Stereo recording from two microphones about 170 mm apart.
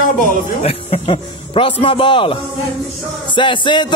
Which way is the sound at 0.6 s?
35° left (ahead or behind).